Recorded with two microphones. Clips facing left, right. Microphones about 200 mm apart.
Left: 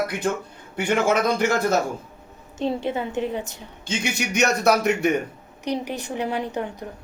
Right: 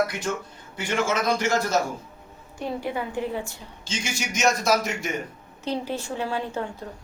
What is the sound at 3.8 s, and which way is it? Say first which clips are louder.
A man's voice: left 5 dB; 60° left (ahead or behind).